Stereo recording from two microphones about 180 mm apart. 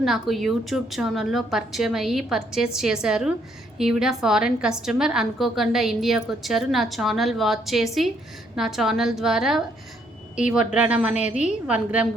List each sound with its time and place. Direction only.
0.0 s a woman's voice: centre (ahead or behind)
10.7 s speech: 5° right (ahead or behind)
11.1 s a woman's voice: 40° left (ahead or behind)
11.7 s speech: 5° right (ahead or behind)